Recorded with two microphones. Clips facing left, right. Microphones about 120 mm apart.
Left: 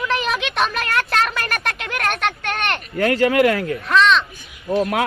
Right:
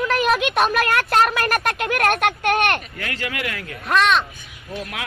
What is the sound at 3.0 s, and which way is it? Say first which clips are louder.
Speech: left 13 dB; 40° left (ahead or behind).